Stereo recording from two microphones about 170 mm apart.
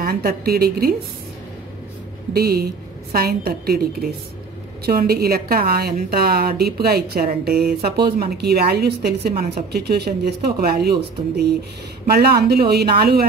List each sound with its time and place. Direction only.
0.0 s a woman's voice: 65° right (ahead or behind)
2.3 s a woman's voice: 65° right (ahead or behind)